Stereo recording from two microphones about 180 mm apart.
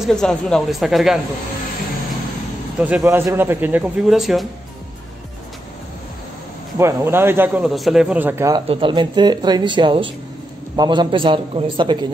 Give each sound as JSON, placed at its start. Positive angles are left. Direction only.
{"t": 0.0, "sound": "speech", "side_deg": 5}
{"t": 2.8, "sound": "speech", "side_deg": -10}
{"t": 6.8, "sound": "speech", "side_deg": -15}
{"t": 8.6, "sound": "speech", "side_deg": -30}